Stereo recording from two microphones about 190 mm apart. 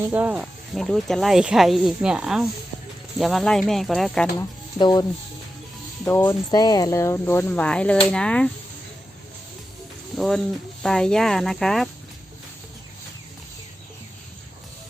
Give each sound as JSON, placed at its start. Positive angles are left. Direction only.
{"t": 0.0, "sound": "speech", "side_deg": -10}
{"t": 4.4, "sound": "speech", "side_deg": 20}
{"t": 6.1, "sound": "speech", "side_deg": 15}
{"t": 10.2, "sound": "speech", "side_deg": 0}